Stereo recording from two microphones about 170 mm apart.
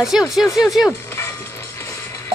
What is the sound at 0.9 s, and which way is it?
Music, 15° left (ahead or behind).